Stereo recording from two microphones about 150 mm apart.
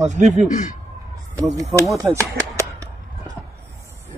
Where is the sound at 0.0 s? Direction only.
50° right (ahead or behind).